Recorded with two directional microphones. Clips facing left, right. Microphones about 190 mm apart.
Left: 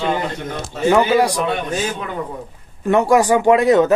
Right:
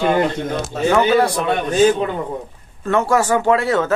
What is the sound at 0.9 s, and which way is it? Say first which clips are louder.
Speech: left 1 dB; 10° left (ahead or behind).